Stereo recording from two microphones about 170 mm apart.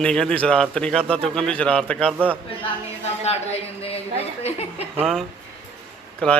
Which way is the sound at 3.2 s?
40° left (ahead or behind).